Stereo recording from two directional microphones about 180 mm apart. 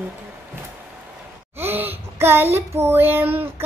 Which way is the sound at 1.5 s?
10° right (ahead or behind).